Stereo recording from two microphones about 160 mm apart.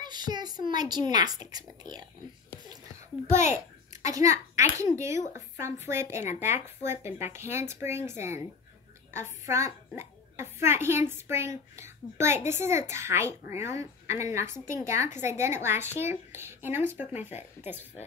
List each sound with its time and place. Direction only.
0.0 s a sound: 25° right (ahead or behind)
0.7 s a child's voice: 25° right (ahead or behind)
3.3 s a child's voice: 15° right (ahead or behind)